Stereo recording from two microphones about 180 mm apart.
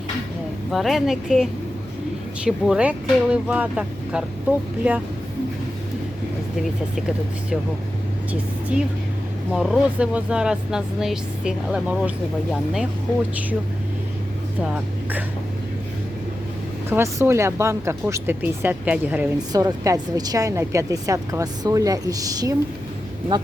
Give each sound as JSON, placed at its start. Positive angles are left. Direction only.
{"t": 0.7, "sound": "speech", "side_deg": 0}
{"t": 9.5, "sound": "speech", "side_deg": -5}
{"t": 14.6, "sound": "speech", "side_deg": -5}
{"t": 16.9, "sound": "speech", "side_deg": -15}
{"t": 19.5, "sound": "a woman's voice", "side_deg": -20}